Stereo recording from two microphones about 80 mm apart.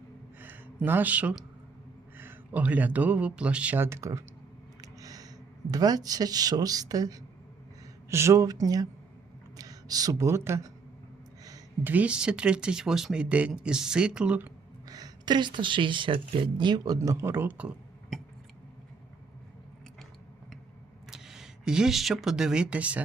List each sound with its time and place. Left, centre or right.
0.9 s speech: right
3.8 s speech: right
4.8 s a sound: right
5.7 s a woman's voice: right
8.1 s a woman's voice: right
11.8 s speech: right
14.8 s speech: right
17.0 s speech: right
18.1 s a sound: centre
21.1 s speech: centre